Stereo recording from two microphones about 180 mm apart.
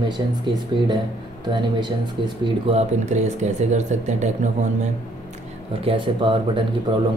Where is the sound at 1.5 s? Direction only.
25° right (ahead or behind); by 4.1 s 40° right (ahead or behind).